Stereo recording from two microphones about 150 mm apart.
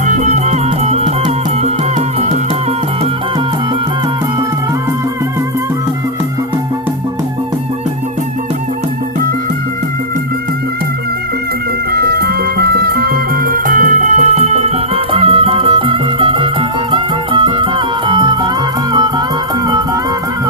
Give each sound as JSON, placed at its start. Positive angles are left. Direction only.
{"t": 0.1, "sound": "music", "side_deg": -50}
{"t": 11.9, "sound": "music", "side_deg": -90}